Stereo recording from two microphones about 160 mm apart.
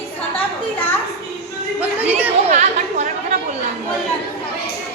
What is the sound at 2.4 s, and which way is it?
Chatter, 45° right (ahead or behind).